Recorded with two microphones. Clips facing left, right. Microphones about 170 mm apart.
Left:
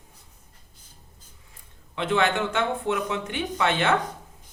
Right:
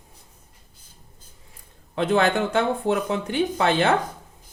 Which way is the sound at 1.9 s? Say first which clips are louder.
Right 3 dB; 40° right (ahead or behind).